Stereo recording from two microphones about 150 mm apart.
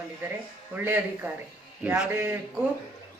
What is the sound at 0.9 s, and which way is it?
Speech, 10° right (ahead or behind).